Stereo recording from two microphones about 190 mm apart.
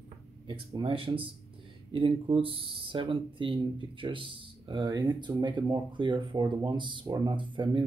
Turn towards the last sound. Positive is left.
turn(degrees=-25)  # may be behind; listen again after turning